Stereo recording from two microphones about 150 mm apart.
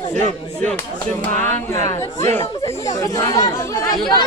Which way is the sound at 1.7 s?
20° left (ahead or behind).